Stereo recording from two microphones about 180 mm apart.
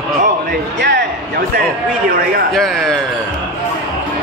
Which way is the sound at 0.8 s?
80° right.